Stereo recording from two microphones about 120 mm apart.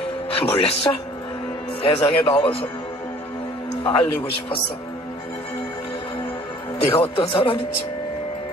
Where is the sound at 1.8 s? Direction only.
45° left (ahead or behind).